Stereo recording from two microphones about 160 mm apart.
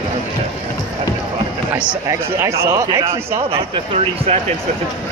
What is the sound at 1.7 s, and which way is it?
Speech, 15° right (ahead or behind).